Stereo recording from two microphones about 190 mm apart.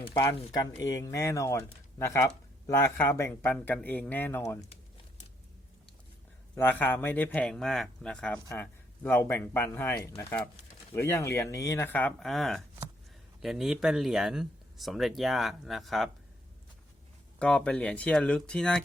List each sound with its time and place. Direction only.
0.1 s speech: 15° left (ahead or behind)
6.6 s speech: 10° left (ahead or behind)
17.4 s speech: 5° left (ahead or behind)